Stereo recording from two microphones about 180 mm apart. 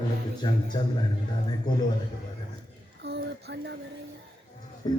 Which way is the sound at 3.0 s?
70° right (ahead or behind).